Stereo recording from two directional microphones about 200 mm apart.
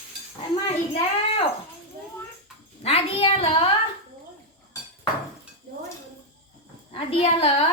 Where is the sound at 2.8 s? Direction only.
30° left (ahead or behind).